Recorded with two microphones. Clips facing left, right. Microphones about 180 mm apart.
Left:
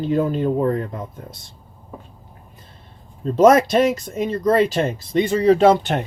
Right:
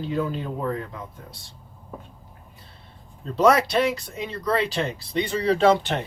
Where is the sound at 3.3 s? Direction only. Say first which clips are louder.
Left 6 dB; 45° left (ahead or behind).